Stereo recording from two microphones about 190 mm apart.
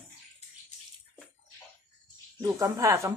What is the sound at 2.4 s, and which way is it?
Speech, 15° right (ahead or behind).